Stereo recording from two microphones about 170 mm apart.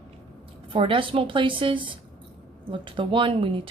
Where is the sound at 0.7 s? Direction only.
30° right (ahead or behind).